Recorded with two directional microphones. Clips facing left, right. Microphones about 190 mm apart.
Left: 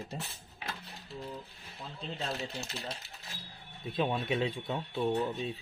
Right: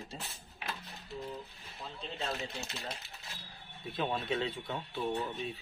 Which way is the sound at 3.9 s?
15° left (ahead or behind).